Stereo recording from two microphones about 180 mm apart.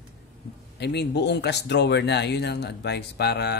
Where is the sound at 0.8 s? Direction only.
70° left (ahead or behind).